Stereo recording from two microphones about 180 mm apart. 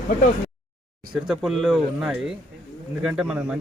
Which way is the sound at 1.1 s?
Centre (ahead or behind).